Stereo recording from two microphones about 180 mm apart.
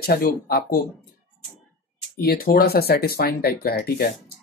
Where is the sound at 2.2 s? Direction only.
60° left (ahead or behind).